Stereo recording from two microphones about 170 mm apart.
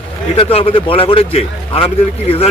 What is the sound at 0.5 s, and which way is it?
A man's voice, 35° left (ahead or behind).